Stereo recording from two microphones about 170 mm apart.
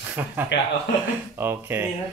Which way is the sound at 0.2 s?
15° right (ahead or behind).